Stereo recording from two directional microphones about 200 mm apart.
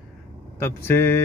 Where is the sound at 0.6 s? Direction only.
10° left (ahead or behind).